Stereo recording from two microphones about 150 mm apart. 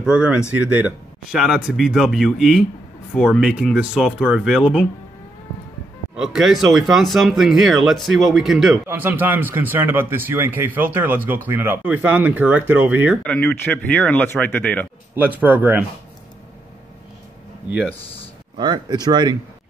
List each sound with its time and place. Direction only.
0.0 s speech: 5° right (ahead or behind)
6.1 s speech: centre (ahead or behind)
8.8 s speech: 15° right (ahead or behind)
13.2 s speech: 5° left (ahead or behind)
15.1 s speech: 10° right (ahead or behind)
18.6 s speech: 30° right (ahead or behind)